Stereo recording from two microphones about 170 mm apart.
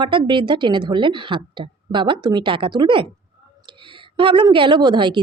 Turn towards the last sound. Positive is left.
turn(degrees=-25)  # may be behind; listen again after turning